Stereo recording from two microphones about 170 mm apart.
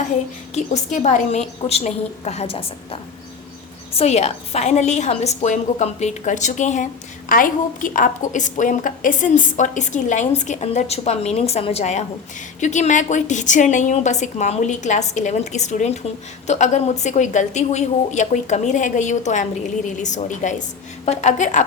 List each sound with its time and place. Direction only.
0.5 s a woman's voice: 45° left (ahead or behind)